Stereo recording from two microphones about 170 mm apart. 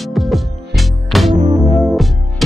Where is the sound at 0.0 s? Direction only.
Centre (ahead or behind).